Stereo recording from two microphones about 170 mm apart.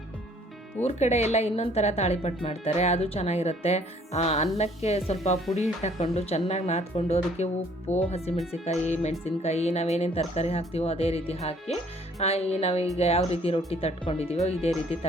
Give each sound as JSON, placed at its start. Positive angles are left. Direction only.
{"t": 0.8, "sound": "speech", "side_deg": 40}